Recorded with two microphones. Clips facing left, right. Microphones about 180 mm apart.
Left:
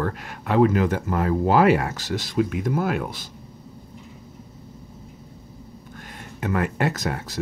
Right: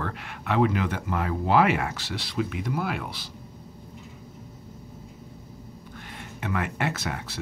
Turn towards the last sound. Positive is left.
turn(degrees=40)  # may be behind; listen again after turning